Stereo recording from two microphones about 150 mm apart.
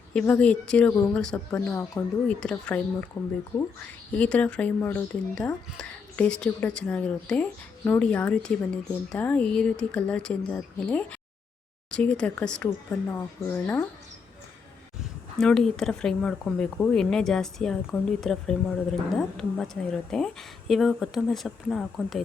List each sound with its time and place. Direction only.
0.1 s speech: 5° left (ahead or behind)
4.1 s speech: 10° left (ahead or behind)
15.4 s speech: 5° left (ahead or behind)